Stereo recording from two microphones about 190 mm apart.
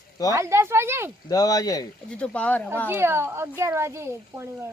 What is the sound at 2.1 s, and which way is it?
Speech, 5° left (ahead or behind).